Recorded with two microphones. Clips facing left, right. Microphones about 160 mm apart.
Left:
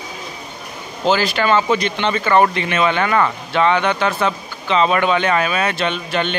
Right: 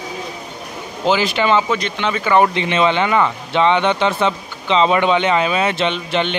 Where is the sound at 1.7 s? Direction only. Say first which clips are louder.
Left 2 dB; centre (ahead or behind).